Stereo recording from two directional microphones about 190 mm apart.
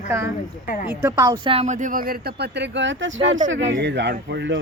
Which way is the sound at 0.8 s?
15° right (ahead or behind).